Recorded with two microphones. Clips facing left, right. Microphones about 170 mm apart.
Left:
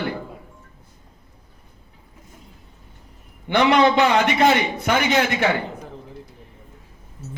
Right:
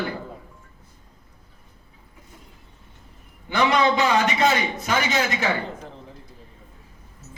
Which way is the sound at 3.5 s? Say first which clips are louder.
Left 4 dB; 60° left (ahead or behind).